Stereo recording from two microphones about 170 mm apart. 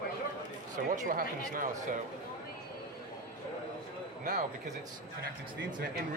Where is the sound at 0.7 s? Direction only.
50° right (ahead or behind).